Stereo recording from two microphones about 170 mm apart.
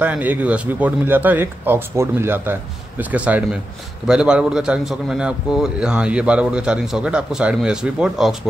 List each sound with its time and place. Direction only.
0.0 s a man's voice: 10° right (ahead or behind)